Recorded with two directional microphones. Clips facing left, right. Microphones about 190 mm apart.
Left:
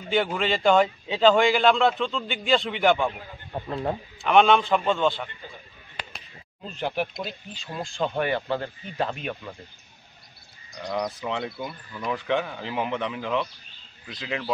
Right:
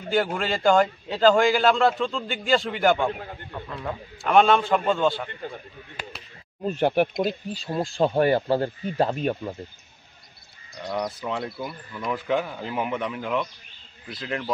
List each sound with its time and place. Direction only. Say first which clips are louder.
0.1 s a man's voice: even; centre (ahead or behind)
4.2 s a man's voice: even; centre (ahead or behind)
6.6 s speech: right 7 dB; 55° right (ahead or behind)
7.4 s speech: right 7 dB; 35° right (ahead or behind)
10.7 s a man's voice: even; 5° right (ahead or behind)
14.2 s a man's voice: right 1 dB; 5° left (ahead or behind)